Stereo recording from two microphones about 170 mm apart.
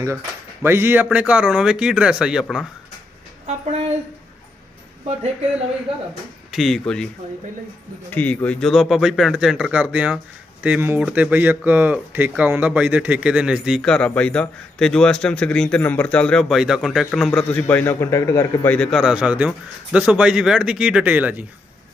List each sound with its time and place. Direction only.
0.6 s speech: 15° right (ahead or behind)
3.4 s a sound: 40° right (ahead or behind)
6.5 s speech: centre (ahead or behind)
8.1 s speech: 10° left (ahead or behind); by 21.4 s 10° right (ahead or behind)